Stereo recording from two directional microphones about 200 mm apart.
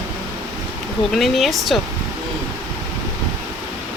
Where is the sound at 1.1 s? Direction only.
Centre (ahead or behind).